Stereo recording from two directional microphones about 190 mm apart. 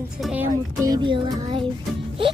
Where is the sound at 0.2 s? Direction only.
5° right (ahead or behind).